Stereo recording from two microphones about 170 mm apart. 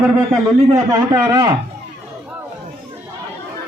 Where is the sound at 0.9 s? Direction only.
20° right (ahead or behind).